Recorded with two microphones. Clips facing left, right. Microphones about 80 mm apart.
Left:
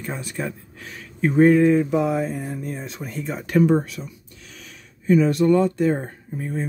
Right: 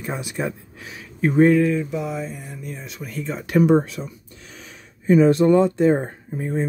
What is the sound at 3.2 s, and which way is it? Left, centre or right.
Speech, centre.